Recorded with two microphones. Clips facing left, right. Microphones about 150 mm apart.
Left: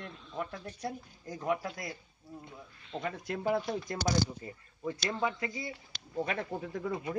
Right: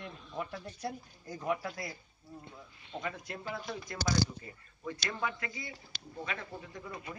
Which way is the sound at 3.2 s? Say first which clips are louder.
Left 9 dB; 90° left.